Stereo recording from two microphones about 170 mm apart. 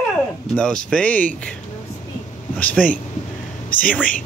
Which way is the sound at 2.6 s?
10° left (ahead or behind).